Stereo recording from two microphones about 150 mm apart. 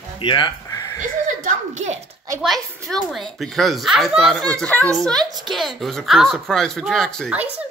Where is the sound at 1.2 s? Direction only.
60° right (ahead or behind).